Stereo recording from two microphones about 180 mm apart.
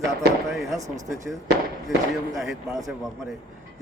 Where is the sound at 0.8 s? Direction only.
20° right (ahead or behind).